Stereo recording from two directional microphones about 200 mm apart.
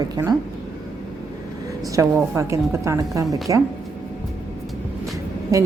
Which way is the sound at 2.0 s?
15° right (ahead or behind).